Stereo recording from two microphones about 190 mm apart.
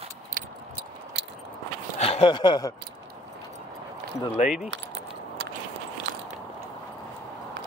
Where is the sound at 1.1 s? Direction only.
65° right (ahead or behind).